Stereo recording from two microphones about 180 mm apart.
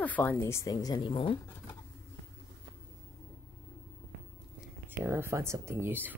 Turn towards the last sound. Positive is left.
turn(degrees=-10)  # may be behind; listen again after turning